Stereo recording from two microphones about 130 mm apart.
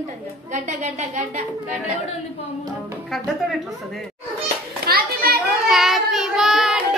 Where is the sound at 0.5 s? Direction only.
70° right (ahead or behind).